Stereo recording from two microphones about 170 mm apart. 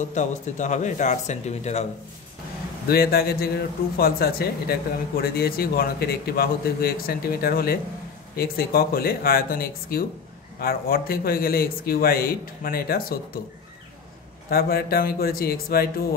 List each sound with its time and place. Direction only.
0.0 s speech: 45° left (ahead or behind)
2.9 s speech: 65° left (ahead or behind)
14.5 s speech: 65° left (ahead or behind)